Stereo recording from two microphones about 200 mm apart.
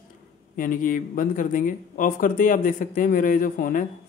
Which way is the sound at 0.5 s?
40° left (ahead or behind).